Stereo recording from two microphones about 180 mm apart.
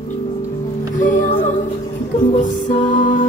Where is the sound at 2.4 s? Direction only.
45° left (ahead or behind).